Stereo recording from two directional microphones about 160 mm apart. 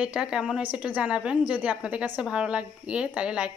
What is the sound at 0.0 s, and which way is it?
A woman's voice, 5° right (ahead or behind).